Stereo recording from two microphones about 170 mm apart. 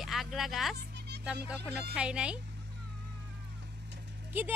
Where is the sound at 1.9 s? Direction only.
5° right (ahead or behind).